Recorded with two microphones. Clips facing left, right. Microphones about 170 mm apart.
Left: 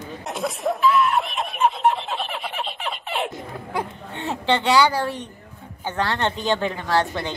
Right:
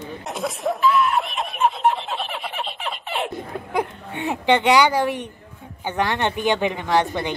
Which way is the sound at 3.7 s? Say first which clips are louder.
Right 4 dB; 15° right (ahead or behind).